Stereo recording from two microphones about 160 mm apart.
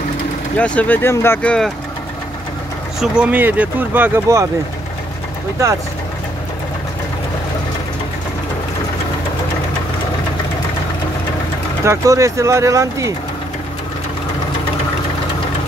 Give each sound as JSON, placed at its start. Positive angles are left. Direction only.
{"t": 0.6, "sound": "speech", "side_deg": 10}
{"t": 3.0, "sound": "speech", "side_deg": -10}
{"t": 11.8, "sound": "speech", "side_deg": -20}